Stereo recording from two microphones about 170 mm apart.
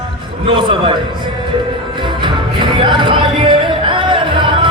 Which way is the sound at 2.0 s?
30° right (ahead or behind).